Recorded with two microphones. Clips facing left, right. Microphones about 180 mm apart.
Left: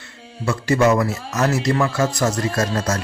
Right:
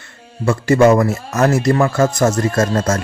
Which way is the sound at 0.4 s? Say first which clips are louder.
Right 5 dB; 50° right (ahead or behind).